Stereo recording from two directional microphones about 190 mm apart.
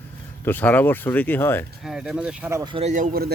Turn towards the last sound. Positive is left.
turn(degrees=-55)  # may be behind; listen again after turning